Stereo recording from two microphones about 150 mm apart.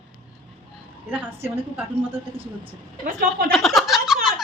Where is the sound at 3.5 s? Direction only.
Centre (ahead or behind).